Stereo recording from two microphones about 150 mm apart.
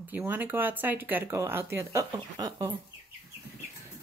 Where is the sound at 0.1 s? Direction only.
10° right (ahead or behind).